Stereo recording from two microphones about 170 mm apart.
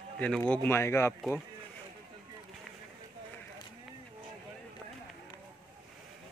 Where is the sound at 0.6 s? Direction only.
15° left (ahead or behind).